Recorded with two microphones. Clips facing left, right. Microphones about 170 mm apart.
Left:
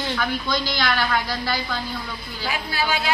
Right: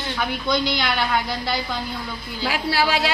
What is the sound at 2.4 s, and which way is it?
Speech, 90° right.